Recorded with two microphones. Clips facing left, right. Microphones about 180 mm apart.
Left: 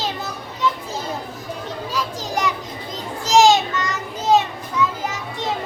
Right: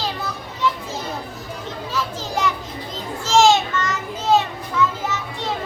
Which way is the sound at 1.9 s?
15° left (ahead or behind).